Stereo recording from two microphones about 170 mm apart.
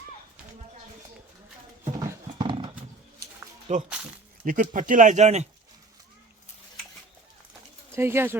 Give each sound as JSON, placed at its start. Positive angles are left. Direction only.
{"t": 1.8, "sound": "clip-clop", "side_deg": -15}
{"t": 2.4, "sound": "horse", "side_deg": -30}
{"t": 3.7, "sound": "speech", "side_deg": -40}
{"t": 7.9, "sound": "speech", "side_deg": -15}